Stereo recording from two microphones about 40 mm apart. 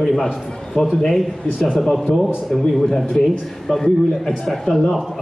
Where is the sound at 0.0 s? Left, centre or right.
Centre.